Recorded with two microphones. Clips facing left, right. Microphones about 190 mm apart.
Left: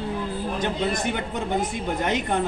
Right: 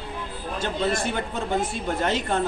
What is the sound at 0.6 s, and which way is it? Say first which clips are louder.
Speech: right 2 dB; 20° left (ahead or behind).